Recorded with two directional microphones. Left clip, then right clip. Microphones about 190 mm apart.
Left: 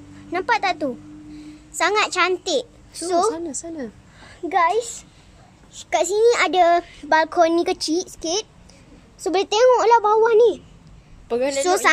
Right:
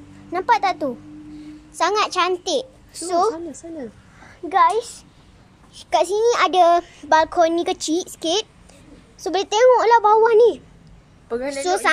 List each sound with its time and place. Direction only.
0.3 s a child's voice: centre (ahead or behind)
4.7 s a woman's voice: 5° left (ahead or behind)
9.2 s a woman's voice: 15° left (ahead or behind)
11.2 s a woman's voice: 35° left (ahead or behind)
11.6 s a woman's voice: 25° left (ahead or behind)